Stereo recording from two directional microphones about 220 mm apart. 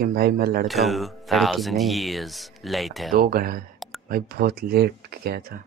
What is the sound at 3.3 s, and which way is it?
Speech, 40° right (ahead or behind).